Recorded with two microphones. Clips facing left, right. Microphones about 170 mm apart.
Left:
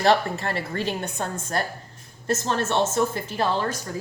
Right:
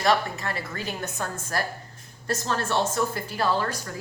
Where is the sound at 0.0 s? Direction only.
30° left (ahead or behind).